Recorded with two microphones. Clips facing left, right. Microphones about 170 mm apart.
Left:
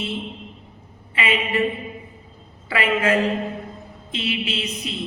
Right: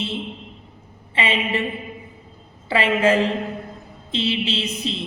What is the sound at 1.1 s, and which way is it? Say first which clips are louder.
Speech: even; 30° right (ahead or behind).